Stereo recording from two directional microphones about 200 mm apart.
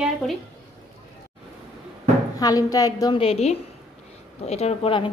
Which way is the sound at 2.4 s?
20° left (ahead or behind).